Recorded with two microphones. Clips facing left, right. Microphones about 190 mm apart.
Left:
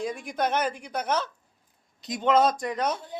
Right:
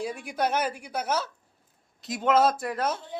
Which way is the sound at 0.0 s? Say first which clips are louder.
Even; 10° right (ahead or behind).